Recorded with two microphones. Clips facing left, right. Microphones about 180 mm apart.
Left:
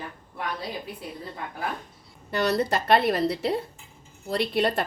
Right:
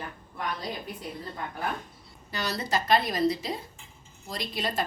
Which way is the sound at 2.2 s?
60° left (ahead or behind).